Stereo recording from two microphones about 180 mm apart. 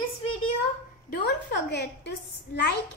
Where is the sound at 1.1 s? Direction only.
65° left (ahead or behind).